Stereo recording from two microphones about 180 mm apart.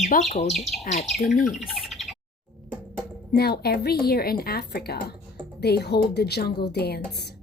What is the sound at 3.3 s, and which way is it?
A woman's voice, 60° left (ahead or behind).